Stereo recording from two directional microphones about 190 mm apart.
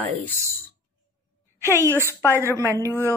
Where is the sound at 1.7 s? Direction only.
15° right (ahead or behind).